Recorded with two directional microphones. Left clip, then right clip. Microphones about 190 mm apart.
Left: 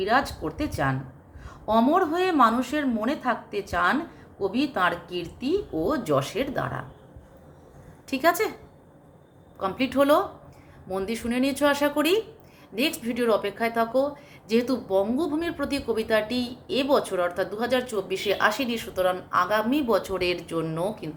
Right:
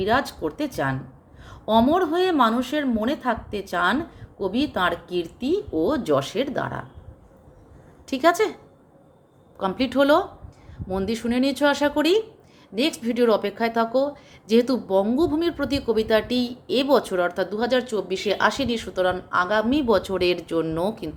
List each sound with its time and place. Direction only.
0.0 s speech: 45° right (ahead or behind)
8.0 s speech: 45° right (ahead or behind)
9.6 s speech: 45° right (ahead or behind)